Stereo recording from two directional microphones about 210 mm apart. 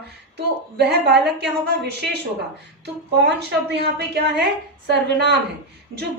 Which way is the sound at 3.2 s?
50° right (ahead or behind).